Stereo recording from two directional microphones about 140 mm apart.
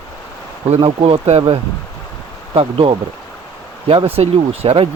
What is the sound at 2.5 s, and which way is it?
Speech, 40° right (ahead or behind).